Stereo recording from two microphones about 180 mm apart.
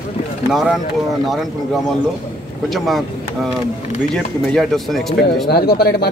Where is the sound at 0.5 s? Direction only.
Centre (ahead or behind).